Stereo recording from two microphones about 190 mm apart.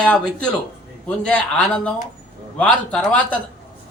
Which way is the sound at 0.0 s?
5° left (ahead or behind).